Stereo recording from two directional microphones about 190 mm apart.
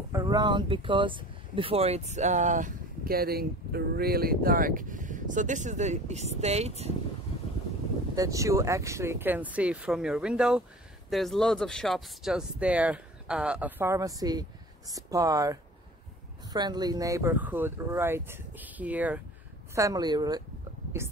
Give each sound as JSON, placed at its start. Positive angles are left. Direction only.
{"t": 0.1, "sound": "speech", "side_deg": -20}
{"t": 8.2, "sound": "speech", "side_deg": -15}